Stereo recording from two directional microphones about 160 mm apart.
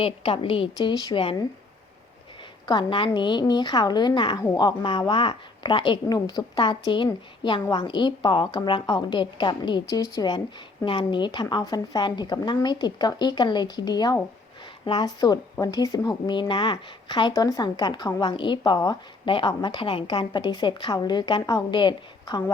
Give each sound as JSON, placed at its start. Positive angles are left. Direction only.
{"t": 0.0, "sound": "a woman's voice", "side_deg": 35}
{"t": 2.6, "sound": "a woman's voice", "side_deg": 30}